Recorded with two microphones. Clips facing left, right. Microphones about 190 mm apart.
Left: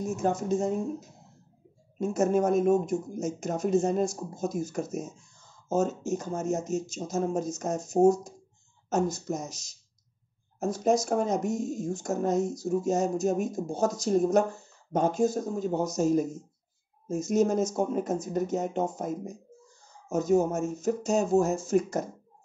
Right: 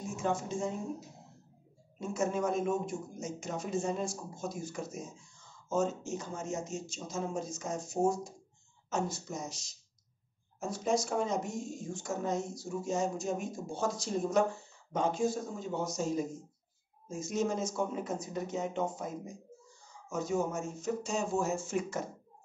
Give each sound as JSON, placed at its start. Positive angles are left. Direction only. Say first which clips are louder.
{"t": 0.0, "sound": "speech", "louder": "left 6 dB", "side_deg": 40}
{"t": 2.0, "sound": "speech", "louder": "left 8 dB", "side_deg": 45}
{"t": 10.6, "sound": "speech", "louder": "left 6 dB", "side_deg": 40}
{"t": 20.1, "sound": "speech", "louder": "left 8 dB", "side_deg": 45}